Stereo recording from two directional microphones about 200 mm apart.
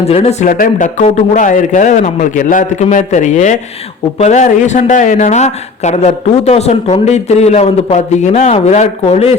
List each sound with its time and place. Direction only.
0.0 s speech: 30° left (ahead or behind)